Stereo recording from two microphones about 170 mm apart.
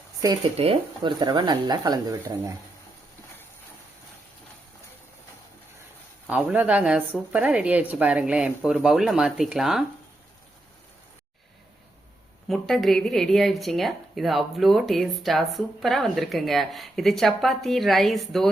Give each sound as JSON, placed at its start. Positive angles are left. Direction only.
{"t": 0.5, "sound": "speech", "side_deg": -35}
{"t": 6.2, "sound": "a woman's voice", "side_deg": -10}
{"t": 12.5, "sound": "a woman's voice", "side_deg": 0}